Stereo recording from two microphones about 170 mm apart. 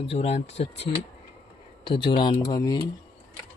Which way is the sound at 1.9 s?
30° left (ahead or behind).